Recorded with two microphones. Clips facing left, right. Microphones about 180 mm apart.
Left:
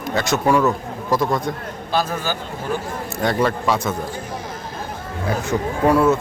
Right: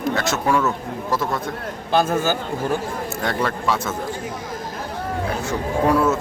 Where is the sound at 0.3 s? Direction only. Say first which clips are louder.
Left 5 dB; 15° left (ahead or behind).